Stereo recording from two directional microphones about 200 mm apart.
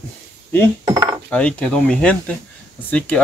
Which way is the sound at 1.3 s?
5° left (ahead or behind).